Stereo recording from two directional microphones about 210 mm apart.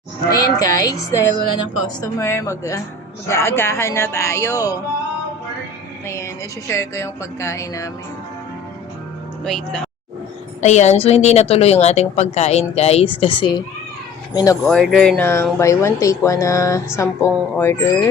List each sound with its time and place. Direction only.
0.6 s speech: 15° left (ahead or behind)
6.1 s speech: 15° left (ahead or behind)
9.4 s speech: centre (ahead or behind)
10.6 s a woman's voice: 35° left (ahead or behind); by 14.6 s 15° left (ahead or behind)
14.7 s speech: centre (ahead or behind)